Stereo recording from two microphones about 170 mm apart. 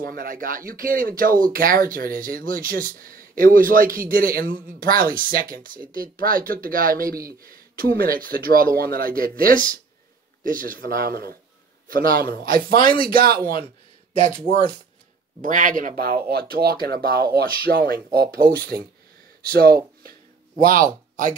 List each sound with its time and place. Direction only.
0.0 s speech: 60° right (ahead or behind)
14.4 s speech: 30° left (ahead or behind)
15.4 s speech: 50° right (ahead or behind)
16.3 s speech: 65° right (ahead or behind)
19.4 s a sound: 60° right (ahead or behind)